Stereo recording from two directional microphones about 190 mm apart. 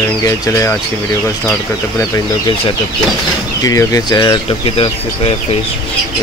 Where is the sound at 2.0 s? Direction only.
25° left (ahead or behind).